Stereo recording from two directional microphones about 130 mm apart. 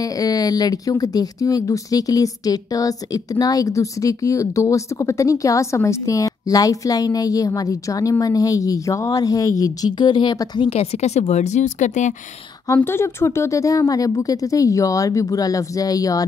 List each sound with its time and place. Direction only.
0.2 s a woman's voice: 30° left (ahead or behind); by 12.1 s 70° left (ahead or behind)
12.6 s a woman's voice: 20° left (ahead or behind)